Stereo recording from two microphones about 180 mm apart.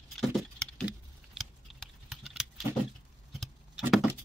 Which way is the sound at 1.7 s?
Centre (ahead or behind).